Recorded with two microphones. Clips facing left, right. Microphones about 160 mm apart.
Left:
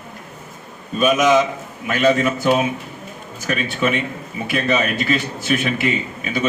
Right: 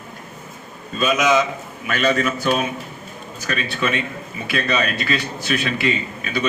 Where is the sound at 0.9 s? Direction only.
15° left (ahead or behind).